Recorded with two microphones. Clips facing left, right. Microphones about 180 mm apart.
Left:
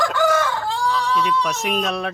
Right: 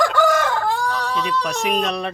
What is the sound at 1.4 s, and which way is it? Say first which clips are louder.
Speech: right 1 dB; centre (ahead or behind).